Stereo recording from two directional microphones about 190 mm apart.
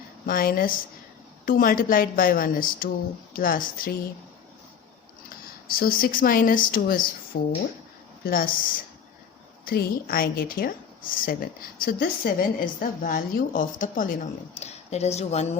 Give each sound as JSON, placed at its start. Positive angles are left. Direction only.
{"t": 0.3, "sound": "a woman's voice", "side_deg": 50}
{"t": 5.6, "sound": "a woman's voice", "side_deg": 50}
{"t": 9.6, "sound": "a woman's voice", "side_deg": 50}